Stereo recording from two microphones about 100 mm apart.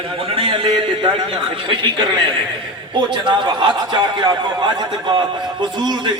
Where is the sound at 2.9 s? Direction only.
50° right (ahead or behind).